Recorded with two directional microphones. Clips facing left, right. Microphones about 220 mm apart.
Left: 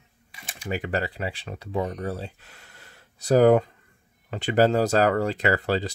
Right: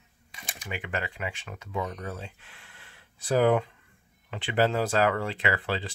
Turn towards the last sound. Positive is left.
turn(degrees=40)  # may be behind; listen again after turning